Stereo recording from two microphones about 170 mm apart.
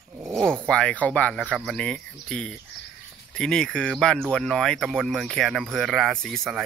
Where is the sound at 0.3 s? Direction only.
5° left (ahead or behind).